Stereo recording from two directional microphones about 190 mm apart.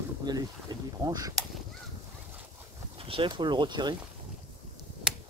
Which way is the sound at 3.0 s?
25° right (ahead or behind).